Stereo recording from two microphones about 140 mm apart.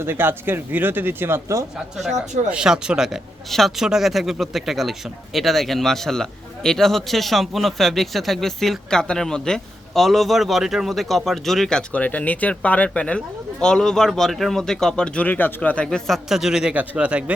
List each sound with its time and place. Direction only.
0.0 s speech: 15° right (ahead or behind)
2.5 s speech: 5° right (ahead or behind)